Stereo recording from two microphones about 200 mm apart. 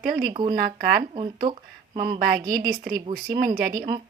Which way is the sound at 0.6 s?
45° right (ahead or behind).